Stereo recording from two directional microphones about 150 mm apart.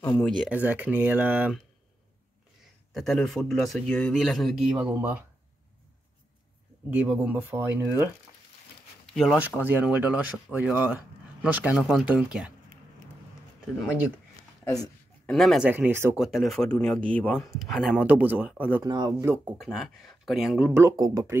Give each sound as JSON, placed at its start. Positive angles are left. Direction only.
{"t": 0.4, "sound": "speech", "side_deg": -10}
{"t": 2.9, "sound": "speech", "side_deg": 0}
{"t": 6.9, "sound": "speech", "side_deg": -10}
{"t": 9.0, "sound": "speech", "side_deg": 0}
{"t": 9.4, "sound": "speech", "side_deg": -10}
{"t": 14.6, "sound": "speech", "side_deg": 25}
{"t": 15.2, "sound": "speech", "side_deg": 0}
{"t": 15.7, "sound": "speech", "side_deg": -15}
{"t": 16.2, "sound": "speech", "side_deg": 0}
{"t": 18.9, "sound": "speech", "side_deg": -30}
{"t": 19.2, "sound": "speech", "side_deg": -15}
{"t": 19.6, "sound": "speech", "side_deg": 0}